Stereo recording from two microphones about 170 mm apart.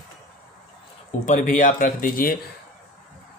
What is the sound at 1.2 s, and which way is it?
Speech, 50° left (ahead or behind).